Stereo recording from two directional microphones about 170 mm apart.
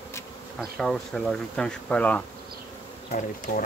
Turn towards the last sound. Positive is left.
turn(degrees=45)  # may be behind; listen again after turning